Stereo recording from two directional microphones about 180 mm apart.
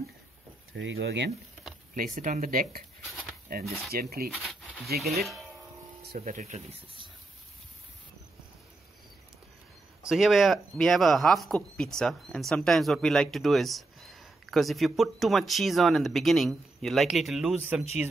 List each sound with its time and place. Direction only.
0.7 s speech: 85° right
2.0 s speech: 50° right (ahead or behind)
3.9 s speech: 55° right (ahead or behind)
4.3 s a sound: centre (ahead or behind)
6.1 s speech: 45° right (ahead or behind)
10.0 s speech: centre (ahead or behind)